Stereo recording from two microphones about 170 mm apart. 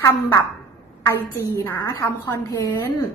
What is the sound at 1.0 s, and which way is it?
A woman's voice, 15° left (ahead or behind).